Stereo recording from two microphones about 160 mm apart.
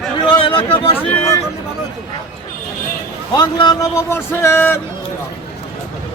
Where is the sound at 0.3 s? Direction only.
35° left (ahead or behind).